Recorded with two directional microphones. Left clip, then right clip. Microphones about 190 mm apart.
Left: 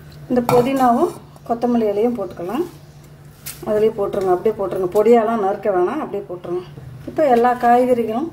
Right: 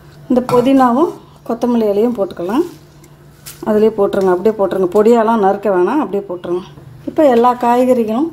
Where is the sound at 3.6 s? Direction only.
50° right (ahead or behind).